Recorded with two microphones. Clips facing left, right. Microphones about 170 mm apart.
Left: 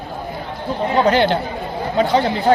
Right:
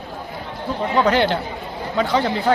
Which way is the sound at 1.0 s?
25° left (ahead or behind).